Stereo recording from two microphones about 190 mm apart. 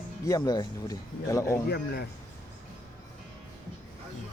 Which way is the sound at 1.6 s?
55° left (ahead or behind).